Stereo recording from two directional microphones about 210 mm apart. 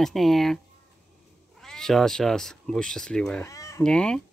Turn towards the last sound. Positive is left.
turn(degrees=5)  # may be behind; listen again after turning